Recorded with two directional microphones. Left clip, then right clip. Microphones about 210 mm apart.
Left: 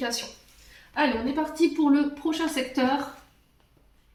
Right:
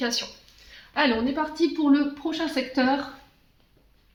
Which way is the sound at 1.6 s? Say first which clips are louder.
Even; 35° right (ahead or behind).